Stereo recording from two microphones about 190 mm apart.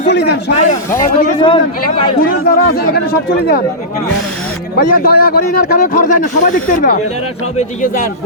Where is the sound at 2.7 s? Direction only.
55° left (ahead or behind).